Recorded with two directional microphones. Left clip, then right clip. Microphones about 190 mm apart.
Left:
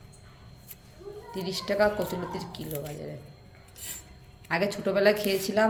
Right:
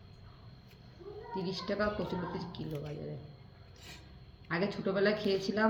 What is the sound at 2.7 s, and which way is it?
Speech, centre (ahead or behind).